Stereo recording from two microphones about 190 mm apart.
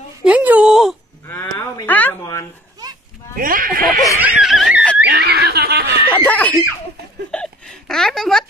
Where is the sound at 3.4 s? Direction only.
45° right (ahead or behind).